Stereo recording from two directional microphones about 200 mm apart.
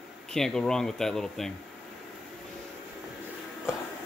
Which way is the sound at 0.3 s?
5° left (ahead or behind).